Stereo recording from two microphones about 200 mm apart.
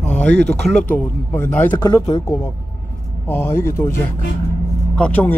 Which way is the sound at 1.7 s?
20° left (ahead or behind).